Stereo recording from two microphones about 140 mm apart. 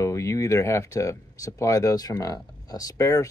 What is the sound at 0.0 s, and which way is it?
Speech, 20° left (ahead or behind).